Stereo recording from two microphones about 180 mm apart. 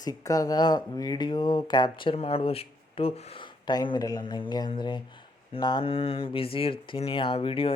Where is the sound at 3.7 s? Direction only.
20° left (ahead or behind).